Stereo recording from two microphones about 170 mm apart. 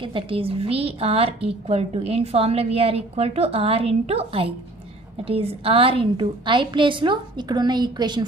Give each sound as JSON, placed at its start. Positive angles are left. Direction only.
{"t": 0.0, "sound": "a woman's voice", "side_deg": -30}